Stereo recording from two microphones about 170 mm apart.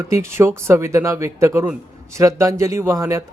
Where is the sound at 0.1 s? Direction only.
15° right (ahead or behind).